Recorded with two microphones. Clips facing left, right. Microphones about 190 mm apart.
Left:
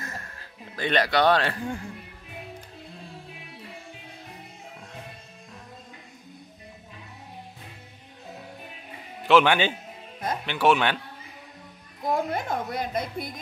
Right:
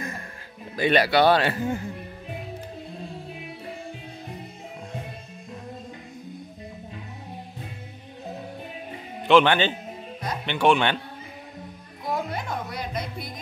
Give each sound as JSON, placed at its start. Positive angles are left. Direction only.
{"t": 0.7, "sound": "speech", "side_deg": -10}
{"t": 9.3, "sound": "a man's voice", "side_deg": 10}
{"t": 12.1, "sound": "speech", "side_deg": 45}